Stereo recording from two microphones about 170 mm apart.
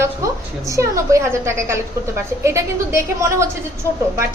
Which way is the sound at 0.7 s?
20° right (ahead or behind).